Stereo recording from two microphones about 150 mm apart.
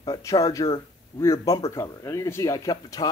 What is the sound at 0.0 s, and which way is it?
A man's voice, 25° left (ahead or behind).